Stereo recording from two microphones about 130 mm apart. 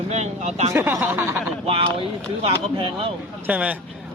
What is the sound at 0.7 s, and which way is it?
Speech, 20° right (ahead or behind).